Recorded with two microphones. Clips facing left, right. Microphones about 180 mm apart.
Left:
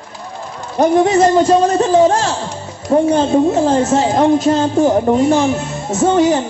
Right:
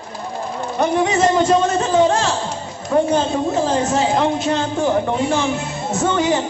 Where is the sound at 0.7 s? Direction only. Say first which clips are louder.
Left 6 dB; 40° left (ahead or behind).